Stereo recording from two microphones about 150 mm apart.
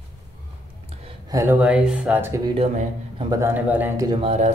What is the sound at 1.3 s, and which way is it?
Speech, 20° right (ahead or behind).